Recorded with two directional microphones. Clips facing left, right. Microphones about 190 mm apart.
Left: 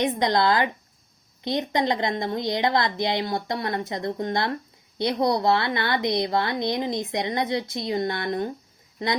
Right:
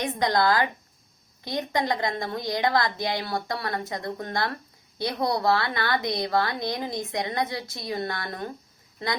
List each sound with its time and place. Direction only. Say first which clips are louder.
0.0 s a woman's voice: left 2 dB; 20° left (ahead or behind)